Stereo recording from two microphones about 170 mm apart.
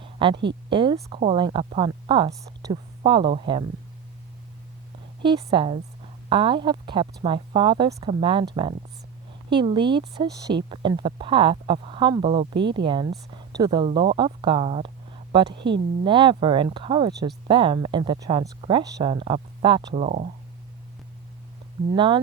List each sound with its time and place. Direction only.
0.0 s a sound: 30° right (ahead or behind)
0.7 s speech: 30° right (ahead or behind)
5.2 s speech: 25° right (ahead or behind)
9.5 s speech: 30° right (ahead or behind)
15.4 s a woman's voice: 85° right
16.0 s speech: 30° right (ahead or behind); by 20.3 s 45° right (ahead or behind)
21.9 s speech: 30° right (ahead or behind)